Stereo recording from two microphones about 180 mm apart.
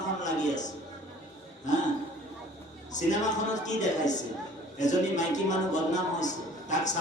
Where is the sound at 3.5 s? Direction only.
40° left (ahead or behind).